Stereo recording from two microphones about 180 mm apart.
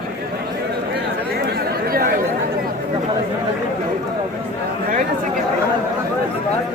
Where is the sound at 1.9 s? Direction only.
55° right (ahead or behind).